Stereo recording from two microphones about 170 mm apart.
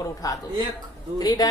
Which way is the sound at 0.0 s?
20° left (ahead or behind).